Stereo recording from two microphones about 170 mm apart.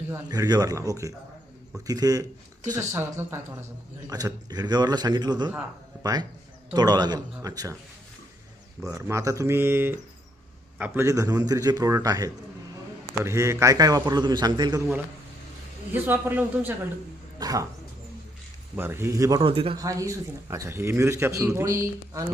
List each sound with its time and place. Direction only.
0.1 s a man's voice: 20° right (ahead or behind)
8.8 s a man's voice: 15° right (ahead or behind)
18.8 s a man's voice: 15° right (ahead or behind); by 19.8 s 30° right (ahead or behind)
19.8 s a man's voice: 20° right (ahead or behind)